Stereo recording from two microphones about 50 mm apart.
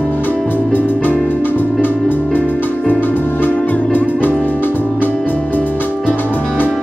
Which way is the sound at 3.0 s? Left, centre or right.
Left.